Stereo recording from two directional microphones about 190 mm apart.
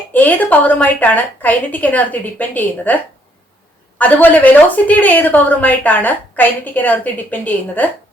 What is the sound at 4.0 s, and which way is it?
A woman's voice, 10° left (ahead or behind).